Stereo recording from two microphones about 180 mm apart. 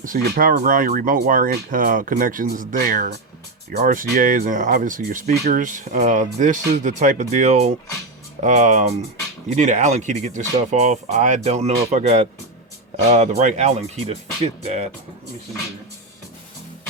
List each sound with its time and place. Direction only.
0.0 s speech: 50° right (ahead or behind)